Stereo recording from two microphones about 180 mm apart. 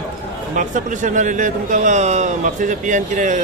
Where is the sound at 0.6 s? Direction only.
45° right (ahead or behind).